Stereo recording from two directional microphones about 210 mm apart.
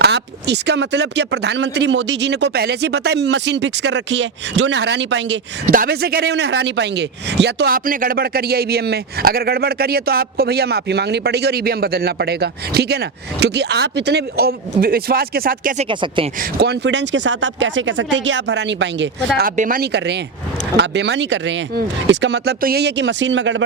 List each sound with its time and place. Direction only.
0.0 s speech: 55° right (ahead or behind)
5.7 s a man's voice: 45° right (ahead or behind)
15.8 s speech: 25° right (ahead or behind)
16.4 s speech: 50° right (ahead or behind)
19.4 s a man's voice: 40° right (ahead or behind); by 23.6 s 60° right (ahead or behind)